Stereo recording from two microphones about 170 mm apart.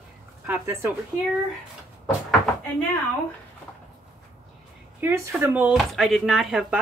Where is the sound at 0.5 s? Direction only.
15° right (ahead or behind).